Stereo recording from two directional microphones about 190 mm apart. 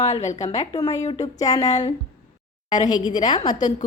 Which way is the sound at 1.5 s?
20° left (ahead or behind).